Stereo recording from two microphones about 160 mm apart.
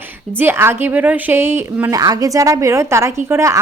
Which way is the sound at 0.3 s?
15° right (ahead or behind).